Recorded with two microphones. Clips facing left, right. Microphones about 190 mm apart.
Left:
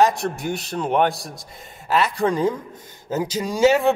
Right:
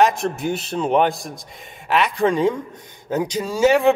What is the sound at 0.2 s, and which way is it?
Speech, centre (ahead or behind).